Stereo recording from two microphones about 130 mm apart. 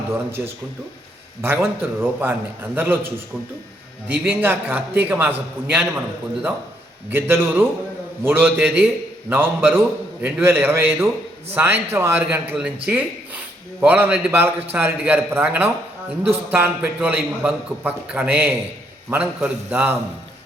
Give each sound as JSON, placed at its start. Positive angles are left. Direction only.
{"t": 0.1, "sound": "a man's voice", "side_deg": -20}
{"t": 4.1, "sound": "a man's voice", "side_deg": -15}
{"t": 7.1, "sound": "a man's voice", "side_deg": -15}